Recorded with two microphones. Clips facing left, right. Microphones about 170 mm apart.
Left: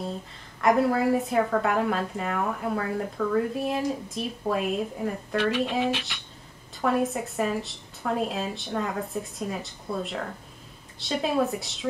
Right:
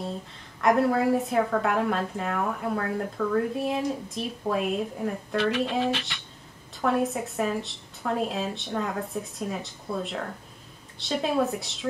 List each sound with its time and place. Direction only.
0.6 s a woman's voice: centre (ahead or behind)